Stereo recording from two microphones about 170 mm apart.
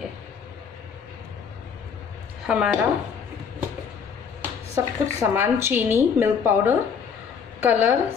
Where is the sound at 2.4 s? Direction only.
5° right (ahead or behind).